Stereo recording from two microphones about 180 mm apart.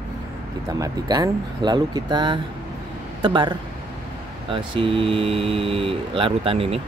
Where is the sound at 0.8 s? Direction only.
20° right (ahead or behind).